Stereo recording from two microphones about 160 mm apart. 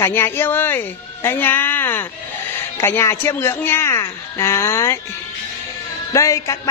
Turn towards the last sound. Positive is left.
turn(degrees=20)  # may be behind; listen again after turning